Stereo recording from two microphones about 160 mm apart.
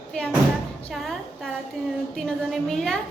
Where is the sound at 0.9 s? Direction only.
Centre (ahead or behind).